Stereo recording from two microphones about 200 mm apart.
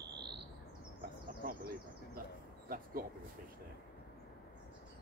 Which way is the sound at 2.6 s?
45° right (ahead or behind).